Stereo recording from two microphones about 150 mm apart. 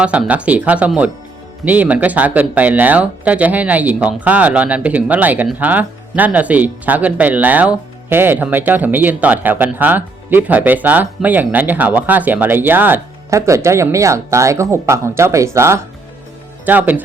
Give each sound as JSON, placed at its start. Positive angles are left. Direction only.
{"t": 0.0, "sound": "speech", "side_deg": -10}